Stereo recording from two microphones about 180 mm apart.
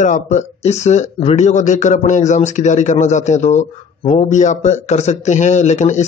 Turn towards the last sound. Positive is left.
turn(degrees=40)  # may be behind; listen again after turning